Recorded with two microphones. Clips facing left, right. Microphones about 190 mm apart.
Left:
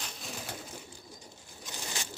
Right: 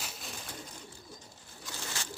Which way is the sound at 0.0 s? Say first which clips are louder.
Left 1 dB; 5° right (ahead or behind).